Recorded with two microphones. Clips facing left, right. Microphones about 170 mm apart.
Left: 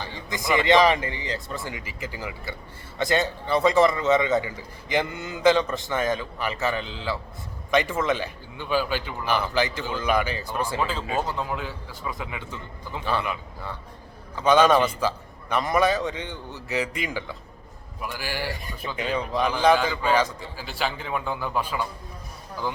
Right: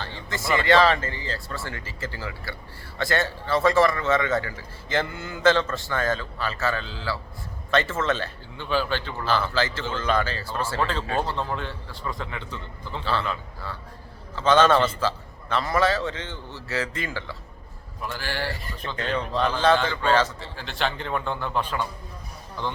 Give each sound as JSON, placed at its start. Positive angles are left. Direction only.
{"t": 0.0, "sound": "a man's voice", "side_deg": 15}